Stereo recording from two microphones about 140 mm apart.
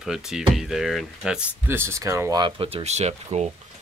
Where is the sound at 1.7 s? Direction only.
20° right (ahead or behind).